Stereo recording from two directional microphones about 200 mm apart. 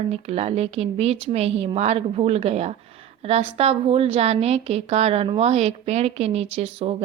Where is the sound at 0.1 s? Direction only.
30° right (ahead or behind).